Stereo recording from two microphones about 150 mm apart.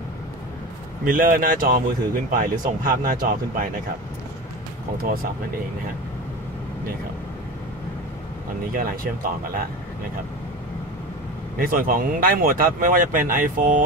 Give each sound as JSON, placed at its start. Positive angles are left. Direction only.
{"t": 1.0, "sound": "speech", "side_deg": -65}
{"t": 4.9, "sound": "speech", "side_deg": -75}
{"t": 8.7, "sound": "speech", "side_deg": -75}
{"t": 11.5, "sound": "speech", "side_deg": -70}